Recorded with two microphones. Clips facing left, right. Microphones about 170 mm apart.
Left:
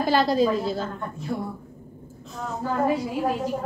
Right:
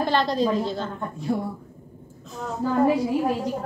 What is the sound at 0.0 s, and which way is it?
Speech, 5° left (ahead or behind).